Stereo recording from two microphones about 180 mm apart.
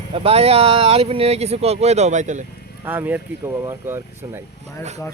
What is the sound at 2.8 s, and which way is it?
Speech, 10° right (ahead or behind).